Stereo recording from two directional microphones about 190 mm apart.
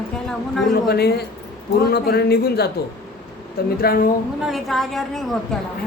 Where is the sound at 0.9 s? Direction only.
55° left (ahead or behind).